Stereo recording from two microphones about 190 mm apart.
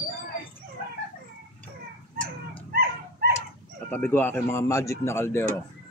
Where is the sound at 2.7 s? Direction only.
55° right (ahead or behind).